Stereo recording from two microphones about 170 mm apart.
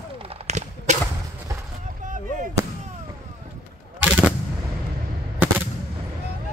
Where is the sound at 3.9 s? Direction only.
10° right (ahead or behind).